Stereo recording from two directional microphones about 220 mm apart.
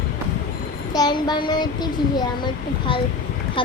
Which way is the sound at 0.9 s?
20° left (ahead or behind).